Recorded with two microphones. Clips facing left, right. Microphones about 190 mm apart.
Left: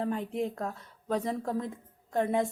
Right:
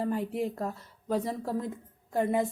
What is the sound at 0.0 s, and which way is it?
A woman's voice, 5° right (ahead or behind).